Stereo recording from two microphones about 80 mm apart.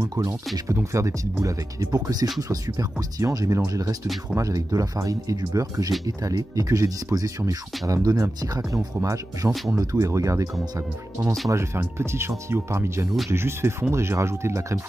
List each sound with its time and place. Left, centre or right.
0.0 s speech: right
0.9 s speech: right